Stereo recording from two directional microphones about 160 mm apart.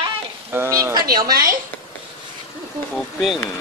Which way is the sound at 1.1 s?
20° right (ahead or behind).